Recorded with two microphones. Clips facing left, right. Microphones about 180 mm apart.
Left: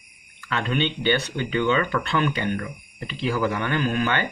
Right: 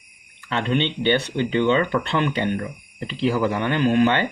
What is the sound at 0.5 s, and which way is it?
Speech, 25° right (ahead or behind).